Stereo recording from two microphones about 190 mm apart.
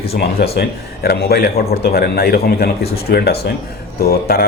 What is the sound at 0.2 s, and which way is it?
A man's voice, 55° left (ahead or behind).